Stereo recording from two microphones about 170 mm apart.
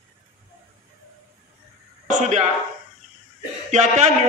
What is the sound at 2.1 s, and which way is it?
Speech, 45° right (ahead or behind).